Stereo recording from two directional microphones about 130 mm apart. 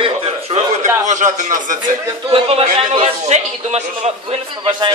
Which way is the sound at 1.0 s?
75° right (ahead or behind).